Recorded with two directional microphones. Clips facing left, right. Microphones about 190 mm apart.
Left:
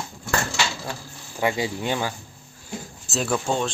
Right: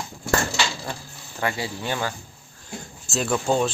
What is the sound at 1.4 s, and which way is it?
Speech, 15° left (ahead or behind).